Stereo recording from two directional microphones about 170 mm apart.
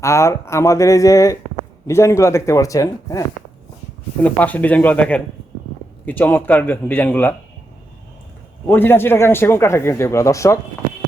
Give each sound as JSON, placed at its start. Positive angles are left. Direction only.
{"t": 0.0, "sound": "a man's voice", "side_deg": 15}
{"t": 4.2, "sound": "a man's voice", "side_deg": 10}
{"t": 8.6, "sound": "a man's voice", "side_deg": 10}